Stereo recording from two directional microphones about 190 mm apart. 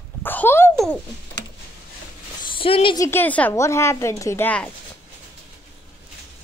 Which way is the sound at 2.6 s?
30° left (ahead or behind).